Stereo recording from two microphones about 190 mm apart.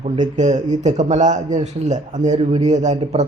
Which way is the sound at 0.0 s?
40° right (ahead or behind).